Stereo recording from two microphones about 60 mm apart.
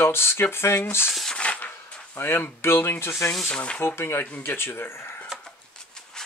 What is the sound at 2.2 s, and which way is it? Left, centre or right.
Speech, left.